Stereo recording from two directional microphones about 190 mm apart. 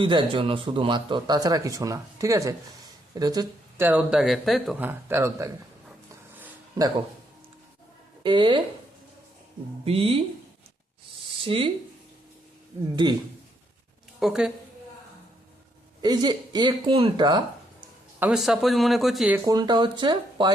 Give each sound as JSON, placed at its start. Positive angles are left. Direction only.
{"t": 0.0, "sound": "speech", "side_deg": -25}
{"t": 4.8, "sound": "speech", "side_deg": -10}
{"t": 6.3, "sound": "a sound", "side_deg": -10}
{"t": 8.2, "sound": "speech", "side_deg": -25}
{"t": 9.8, "sound": "speech", "side_deg": -30}
{"t": 11.4, "sound": "speech", "side_deg": -25}
{"t": 13.0, "sound": "speech", "side_deg": -25}
{"t": 14.2, "sound": "speech", "side_deg": -5}
{"t": 16.0, "sound": "speech", "side_deg": -20}
{"t": 18.2, "sound": "speech", "side_deg": -5}
{"t": 19.5, "sound": "speech", "side_deg": -20}